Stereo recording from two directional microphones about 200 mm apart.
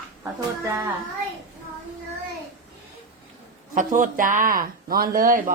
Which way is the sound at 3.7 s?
40° right (ahead or behind).